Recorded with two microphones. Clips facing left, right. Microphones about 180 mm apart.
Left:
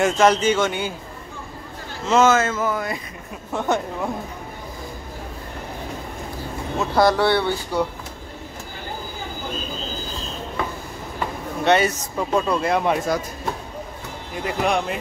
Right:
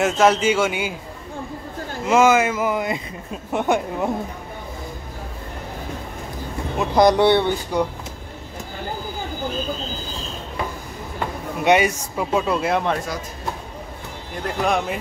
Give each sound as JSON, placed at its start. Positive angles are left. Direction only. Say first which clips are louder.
{"t": 0.0, "sound": "speech", "louder": "even", "side_deg": -5}
{"t": 2.0, "sound": "speech", "louder": "right 1 dB", "side_deg": -10}
{"t": 6.8, "sound": "speech", "louder": "right 3 dB", "side_deg": -15}
{"t": 11.6, "sound": "speech", "louder": "right 1 dB", "side_deg": -10}
{"t": 14.3, "sound": "speech", "louder": "even", "side_deg": 0}